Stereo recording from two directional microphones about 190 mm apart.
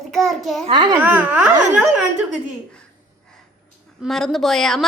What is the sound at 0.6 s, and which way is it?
Speech, 25° right (ahead or behind).